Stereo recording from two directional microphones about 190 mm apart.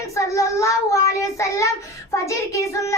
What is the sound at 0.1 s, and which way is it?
Child singing, 15° left (ahead or behind).